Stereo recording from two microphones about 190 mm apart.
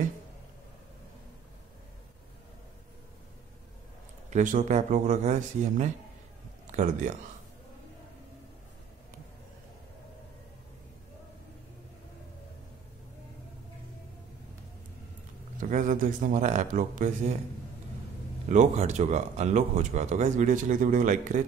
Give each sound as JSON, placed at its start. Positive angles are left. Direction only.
{"t": 4.3, "sound": "speech", "side_deg": -40}
{"t": 15.5, "sound": "speech", "side_deg": -45}
{"t": 18.5, "sound": "speech", "side_deg": -40}